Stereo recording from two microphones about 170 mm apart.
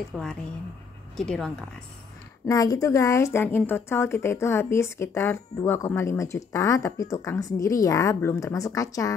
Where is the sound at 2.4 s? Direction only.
20° left (ahead or behind).